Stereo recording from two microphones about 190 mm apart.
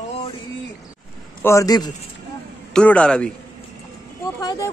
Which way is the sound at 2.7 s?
5° left (ahead or behind).